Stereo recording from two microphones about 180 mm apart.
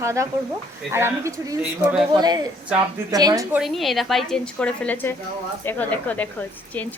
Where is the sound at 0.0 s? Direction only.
15° right (ahead or behind).